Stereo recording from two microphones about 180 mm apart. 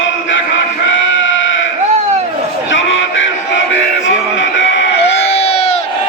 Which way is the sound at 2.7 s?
90° left.